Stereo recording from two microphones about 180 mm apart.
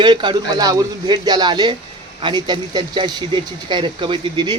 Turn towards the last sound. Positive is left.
turn(degrees=-25)  # may be behind; listen again after turning